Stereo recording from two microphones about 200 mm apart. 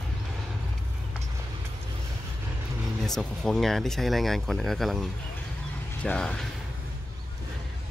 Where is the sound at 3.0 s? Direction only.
Centre (ahead or behind).